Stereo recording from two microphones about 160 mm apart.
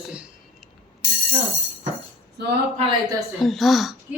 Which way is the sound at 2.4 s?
90° right.